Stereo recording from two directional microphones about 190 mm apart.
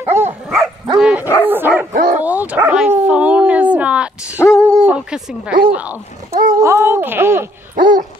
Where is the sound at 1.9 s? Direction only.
50° right (ahead or behind).